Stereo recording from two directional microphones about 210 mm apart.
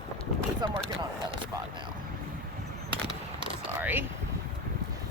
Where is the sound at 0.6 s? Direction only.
20° right (ahead or behind).